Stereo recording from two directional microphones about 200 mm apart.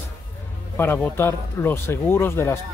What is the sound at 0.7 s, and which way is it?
Speech, 10° left (ahead or behind).